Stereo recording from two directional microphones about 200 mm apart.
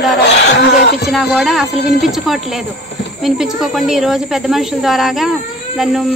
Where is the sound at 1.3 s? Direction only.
Centre (ahead or behind).